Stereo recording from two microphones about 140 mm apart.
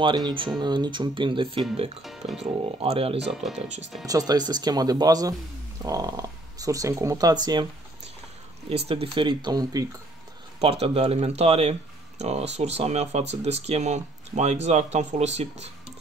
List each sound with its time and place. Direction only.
0.0 s speech: 35° right (ahead or behind)
2.0 s speech: centre (ahead or behind)
2.8 s speech: 45° right (ahead or behind)
3.5 s speech: 55° right (ahead or behind)
4.0 s speech: 25° right (ahead or behind)
8.6 s speech: 45° right (ahead or behind); by 9.8 s 25° right (ahead or behind)
10.6 s speech: 45° right (ahead or behind)